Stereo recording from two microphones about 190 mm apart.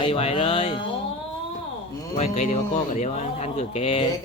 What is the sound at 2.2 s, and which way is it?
Speech, 40° left (ahead or behind).